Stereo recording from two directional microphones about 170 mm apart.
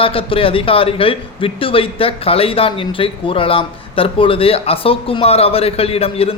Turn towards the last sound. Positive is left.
turn(degrees=35)  # may be behind; listen again after turning